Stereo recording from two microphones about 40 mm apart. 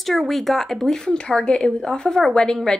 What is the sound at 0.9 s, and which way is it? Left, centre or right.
Speech, centre.